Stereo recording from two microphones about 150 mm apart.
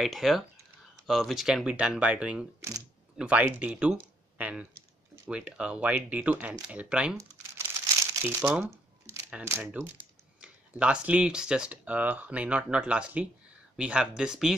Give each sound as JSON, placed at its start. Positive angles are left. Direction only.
{"t": 0.0, "sound": "speech", "side_deg": 0}
{"t": 4.4, "sound": "typing", "side_deg": -10}
{"t": 5.3, "sound": "speech", "side_deg": -10}
{"t": 7.2, "sound": "crumpling", "side_deg": -20}
{"t": 9.0, "sound": "speech", "side_deg": -15}